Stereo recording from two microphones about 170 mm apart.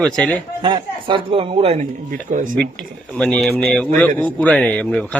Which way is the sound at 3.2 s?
5° left (ahead or behind).